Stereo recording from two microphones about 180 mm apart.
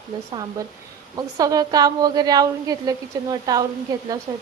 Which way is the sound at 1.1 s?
20° right (ahead or behind).